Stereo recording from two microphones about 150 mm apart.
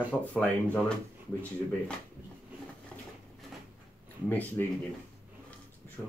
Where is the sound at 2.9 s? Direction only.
5° left (ahead or behind).